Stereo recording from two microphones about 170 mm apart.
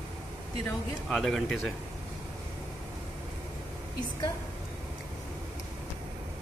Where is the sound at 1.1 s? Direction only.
Centre (ahead or behind).